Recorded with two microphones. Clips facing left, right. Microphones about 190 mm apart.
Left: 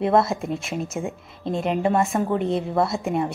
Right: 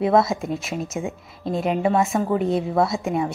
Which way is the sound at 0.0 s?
Centre (ahead or behind).